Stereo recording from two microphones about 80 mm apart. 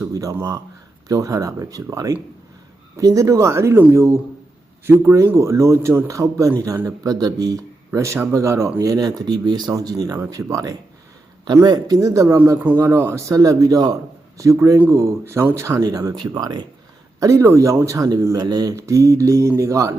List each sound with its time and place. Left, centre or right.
0.1 s a man's voice: right
8.8 s a man's voice: right
11.6 s speech: right
11.9 s speech: right
12.7 s a man's voice: right
14.5 s speech: right
15.8 s a man's voice: right
16.1 s speech: right
17.2 s speech: right
17.8 s a man's voice: right
18.3 s speech: right
18.7 s speech: right